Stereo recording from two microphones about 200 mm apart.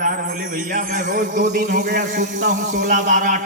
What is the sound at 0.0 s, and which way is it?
A man's voice, 40° right (ahead or behind).